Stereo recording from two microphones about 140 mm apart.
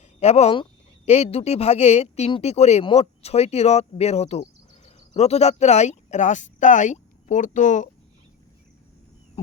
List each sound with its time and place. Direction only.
0.2 s a woman's voice: 50° left (ahead or behind)